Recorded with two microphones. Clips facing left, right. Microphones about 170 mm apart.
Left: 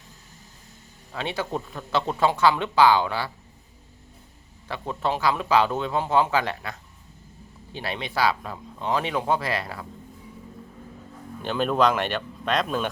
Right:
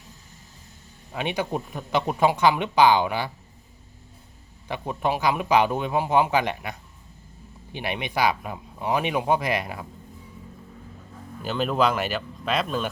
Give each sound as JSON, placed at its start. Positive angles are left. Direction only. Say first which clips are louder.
{"t": 1.1, "sound": "speech", "louder": "right 2 dB", "side_deg": -15}
{"t": 4.7, "sound": "speech", "louder": "right 1 dB", "side_deg": -15}
{"t": 11.4, "sound": "speech", "louder": "left 1 dB", "side_deg": 0}